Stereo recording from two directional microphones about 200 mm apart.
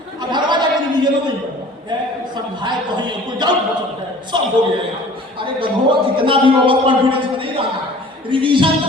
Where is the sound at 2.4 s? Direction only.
20° right (ahead or behind).